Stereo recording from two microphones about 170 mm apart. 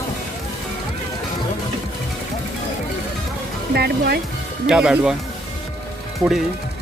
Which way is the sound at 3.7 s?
70° right (ahead or behind).